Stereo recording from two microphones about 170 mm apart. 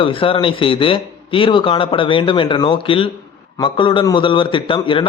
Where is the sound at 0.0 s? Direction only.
30° left (ahead or behind).